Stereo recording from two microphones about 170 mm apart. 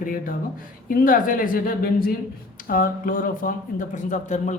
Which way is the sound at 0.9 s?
55° left (ahead or behind).